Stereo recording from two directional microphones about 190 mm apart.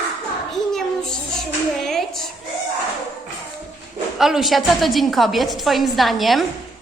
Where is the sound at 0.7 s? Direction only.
Centre (ahead or behind).